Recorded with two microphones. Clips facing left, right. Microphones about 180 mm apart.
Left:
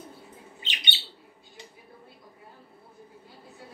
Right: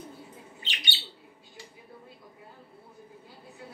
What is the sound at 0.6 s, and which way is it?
Bird, 20° left (ahead or behind).